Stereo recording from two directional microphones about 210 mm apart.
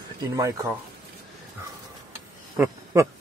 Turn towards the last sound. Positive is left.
turn(degrees=-15)  # may be behind; listen again after turning